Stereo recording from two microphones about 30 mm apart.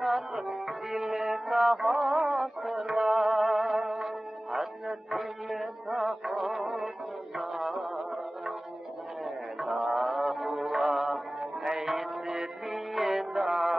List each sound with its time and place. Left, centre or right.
0.3 s music: right
1.9 s a sound: centre
2.3 s music: centre
2.8 s music: right
5.1 s music: centre